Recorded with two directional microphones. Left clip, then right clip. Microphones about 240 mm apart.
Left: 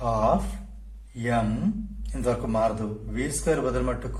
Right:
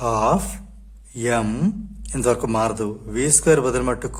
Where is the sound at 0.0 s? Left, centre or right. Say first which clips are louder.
Right 5 dB; right.